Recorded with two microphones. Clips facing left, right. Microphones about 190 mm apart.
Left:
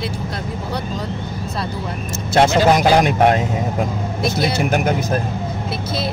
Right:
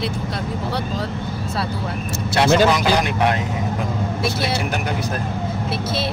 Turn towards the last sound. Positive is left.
turn(degrees=45)  # may be behind; listen again after turning